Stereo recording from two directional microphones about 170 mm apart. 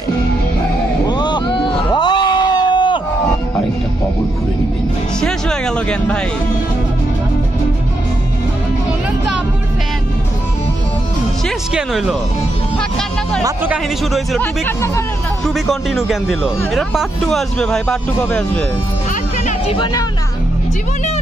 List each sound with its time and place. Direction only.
1.0 s a sound: 25° left (ahead or behind)
5.2 s a sound: 5° left (ahead or behind)
11.4 s speech: centre (ahead or behind)
13.4 s speech: 10° right (ahead or behind)
14.4 s speech: 15° left (ahead or behind)
15.4 s a man's voice: centre (ahead or behind)
19.7 s speech: 25° left (ahead or behind)